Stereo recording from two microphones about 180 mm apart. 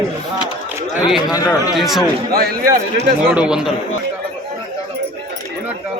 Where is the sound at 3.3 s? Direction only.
5° right (ahead or behind).